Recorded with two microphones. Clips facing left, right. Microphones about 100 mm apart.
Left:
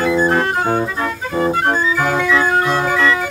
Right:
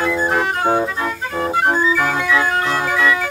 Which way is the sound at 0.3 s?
15° right (ahead or behind).